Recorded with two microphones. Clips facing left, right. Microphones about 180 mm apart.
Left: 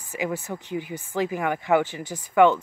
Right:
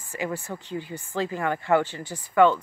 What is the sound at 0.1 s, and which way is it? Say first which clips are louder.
Speech: left 2 dB; 20° left (ahead or behind).